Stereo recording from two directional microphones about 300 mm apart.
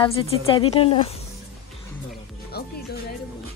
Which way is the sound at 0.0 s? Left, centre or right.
Centre.